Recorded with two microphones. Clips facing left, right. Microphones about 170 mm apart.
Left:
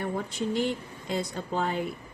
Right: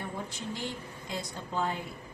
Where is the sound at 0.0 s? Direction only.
60° left (ahead or behind).